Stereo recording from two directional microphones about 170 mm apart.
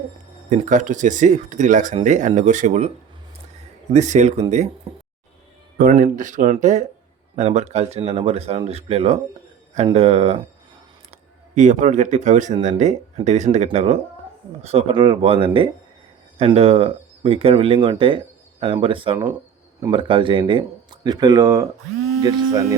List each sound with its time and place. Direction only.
0.5 s speech: 45° right (ahead or behind)
3.9 s speech: 45° right (ahead or behind)
5.7 s speech: 55° right (ahead or behind); by 22.7 s 25° right (ahead or behind)